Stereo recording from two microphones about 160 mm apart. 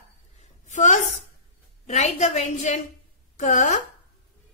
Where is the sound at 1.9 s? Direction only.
45° left (ahead or behind).